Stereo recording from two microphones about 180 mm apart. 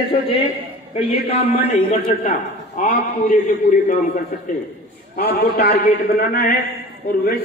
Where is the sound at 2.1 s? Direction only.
50° left (ahead or behind).